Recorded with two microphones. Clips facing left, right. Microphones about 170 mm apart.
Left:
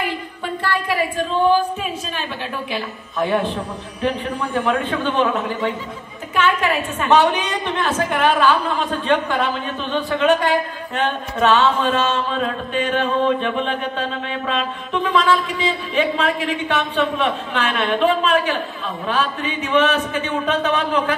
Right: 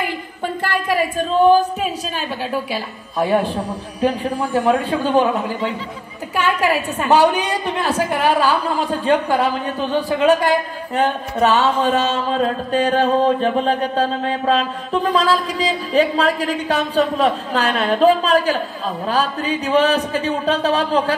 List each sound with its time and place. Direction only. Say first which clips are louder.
1.5 s a woman's voice: right 3 dB; 35° right (ahead or behind)